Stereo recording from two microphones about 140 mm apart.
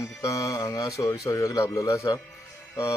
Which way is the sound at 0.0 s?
25° left (ahead or behind).